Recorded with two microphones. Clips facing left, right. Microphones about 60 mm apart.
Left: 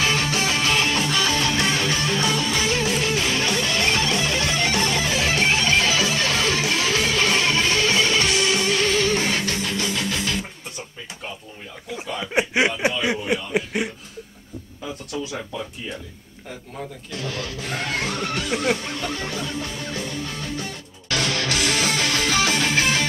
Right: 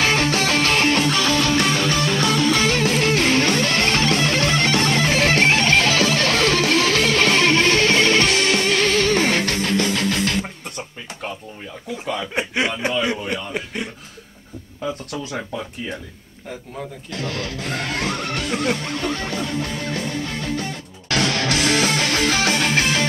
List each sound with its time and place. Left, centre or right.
0.0 s music: right
12.3 s chuckle: centre
17.2 s speech: right
18.8 s music: right